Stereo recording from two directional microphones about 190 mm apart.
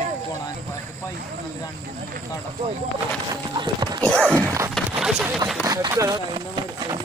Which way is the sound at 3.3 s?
20° right (ahead or behind).